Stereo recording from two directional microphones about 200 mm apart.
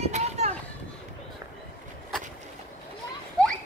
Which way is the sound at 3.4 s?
5° left (ahead or behind).